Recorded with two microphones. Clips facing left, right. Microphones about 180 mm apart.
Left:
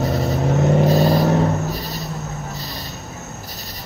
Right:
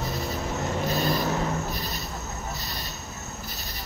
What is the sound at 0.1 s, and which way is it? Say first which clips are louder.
Vehicle: left 10 dB; 65° left (ahead or behind).